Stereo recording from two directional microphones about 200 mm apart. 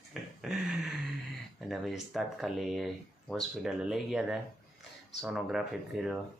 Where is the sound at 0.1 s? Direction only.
Centre (ahead or behind).